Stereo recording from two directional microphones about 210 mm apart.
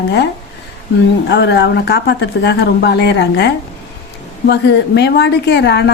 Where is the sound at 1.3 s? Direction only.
55° left (ahead or behind).